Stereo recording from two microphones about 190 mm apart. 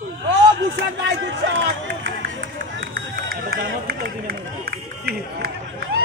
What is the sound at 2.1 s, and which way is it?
Run, 45° right (ahead or behind).